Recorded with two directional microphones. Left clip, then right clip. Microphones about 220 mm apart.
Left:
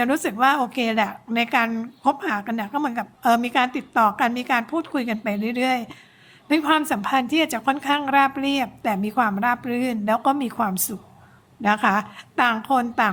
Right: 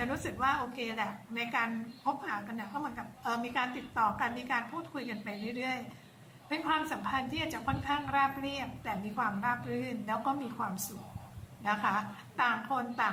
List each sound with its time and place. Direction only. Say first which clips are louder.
0.0 s a woman's voice: left 13 dB; 55° left (ahead or behind)